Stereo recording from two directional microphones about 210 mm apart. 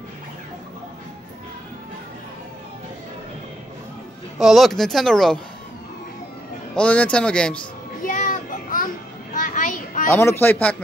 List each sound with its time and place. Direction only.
4.4 s speech: centre (ahead or behind)
6.7 s speech: 5° left (ahead or behind)
8.0 s children playing: 40° left (ahead or behind)
10.4 s speech: 10° left (ahead or behind)